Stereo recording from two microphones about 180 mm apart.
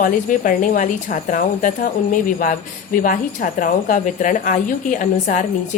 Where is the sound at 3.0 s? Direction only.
50° left (ahead or behind).